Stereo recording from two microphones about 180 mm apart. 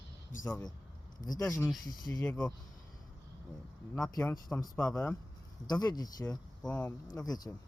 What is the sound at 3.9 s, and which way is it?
Speech, 5° left (ahead or behind).